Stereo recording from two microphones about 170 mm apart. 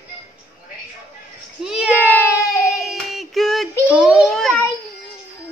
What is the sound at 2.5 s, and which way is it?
Hands, 20° left (ahead or behind).